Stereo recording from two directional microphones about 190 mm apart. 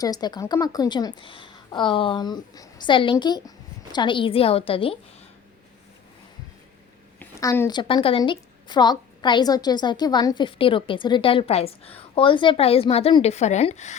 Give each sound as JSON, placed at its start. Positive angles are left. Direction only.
{"t": 0.0, "sound": "a woman's voice", "side_deg": 20}
{"t": 7.2, "sound": "a sound", "side_deg": 15}
{"t": 7.7, "sound": "a woman's voice", "side_deg": 25}